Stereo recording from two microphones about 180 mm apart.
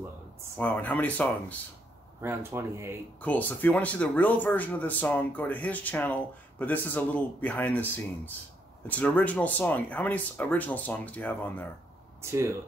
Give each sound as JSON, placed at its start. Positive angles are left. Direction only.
{"t": 0.6, "sound": "speech", "side_deg": 10}
{"t": 2.2, "sound": "speech", "side_deg": -15}
{"t": 3.2, "sound": "speech", "side_deg": 10}
{"t": 12.2, "sound": "speech", "side_deg": -15}